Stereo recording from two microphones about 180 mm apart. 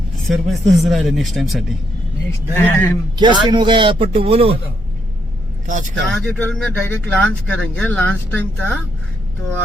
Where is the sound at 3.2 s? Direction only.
25° right (ahead or behind).